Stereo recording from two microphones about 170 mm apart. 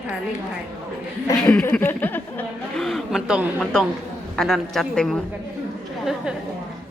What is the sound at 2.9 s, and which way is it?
A woman's voice, centre (ahead or behind).